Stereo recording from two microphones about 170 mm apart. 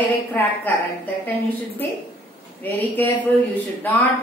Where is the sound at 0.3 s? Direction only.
10° left (ahead or behind).